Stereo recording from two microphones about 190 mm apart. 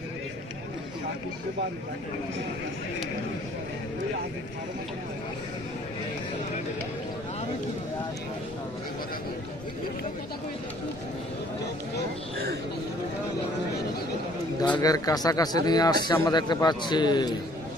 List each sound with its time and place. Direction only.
14.8 s speech: 20° left (ahead or behind)